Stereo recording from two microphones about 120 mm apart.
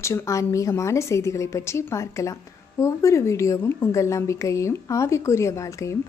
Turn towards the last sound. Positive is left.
turn(degrees=25)  # may be behind; listen again after turning